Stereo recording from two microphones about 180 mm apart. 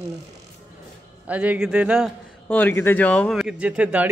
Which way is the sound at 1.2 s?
5° right (ahead or behind).